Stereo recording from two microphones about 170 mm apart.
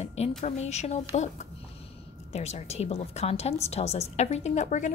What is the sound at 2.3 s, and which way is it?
A woman's voice, 40° left (ahead or behind).